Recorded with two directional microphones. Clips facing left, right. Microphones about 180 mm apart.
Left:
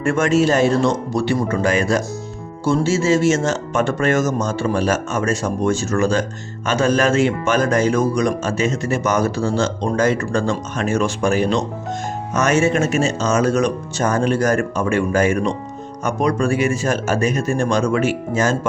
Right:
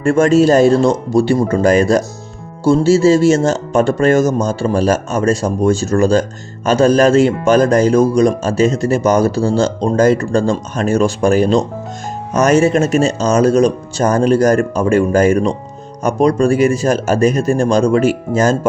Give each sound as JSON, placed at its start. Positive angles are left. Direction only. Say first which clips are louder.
{"t": 0.0, "sound": "a man's voice", "louder": "right 6 dB", "side_deg": -30}